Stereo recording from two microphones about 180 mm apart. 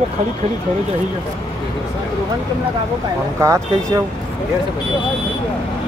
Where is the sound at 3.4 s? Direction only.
15° right (ahead or behind).